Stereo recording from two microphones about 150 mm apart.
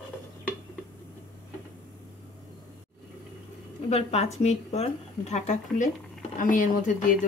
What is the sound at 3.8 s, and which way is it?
Speech, 45° left (ahead or behind).